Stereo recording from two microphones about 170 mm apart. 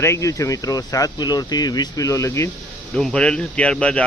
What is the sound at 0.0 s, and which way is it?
Speech, 15° left (ahead or behind).